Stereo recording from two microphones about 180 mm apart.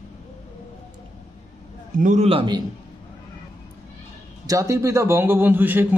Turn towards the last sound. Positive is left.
turn(degrees=-10)  # may be behind; listen again after turning